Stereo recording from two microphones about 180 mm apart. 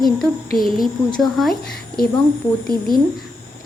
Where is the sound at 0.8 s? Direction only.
Centre (ahead or behind).